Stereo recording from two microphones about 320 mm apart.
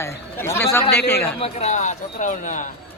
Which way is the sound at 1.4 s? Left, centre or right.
Centre.